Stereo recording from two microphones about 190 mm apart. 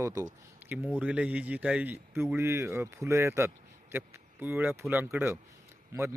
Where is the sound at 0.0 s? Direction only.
15° right (ahead or behind).